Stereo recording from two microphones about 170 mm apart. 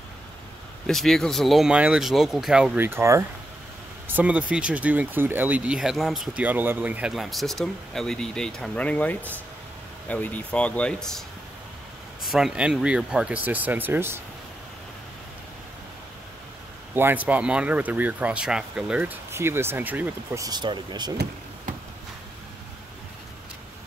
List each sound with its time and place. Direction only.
0.8 s speech: centre (ahead or behind); by 14.2 s 15° right (ahead or behind)
16.9 s speech: 10° right (ahead or behind)
20.4 s speech: 25° right (ahead or behind)